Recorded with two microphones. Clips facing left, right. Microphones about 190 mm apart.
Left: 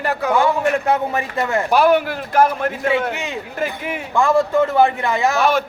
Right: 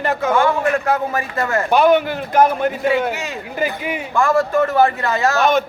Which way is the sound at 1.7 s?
5° left (ahead or behind).